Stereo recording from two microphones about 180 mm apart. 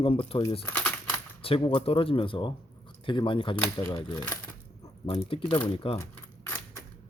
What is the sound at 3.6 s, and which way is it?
Speech, 15° left (ahead or behind).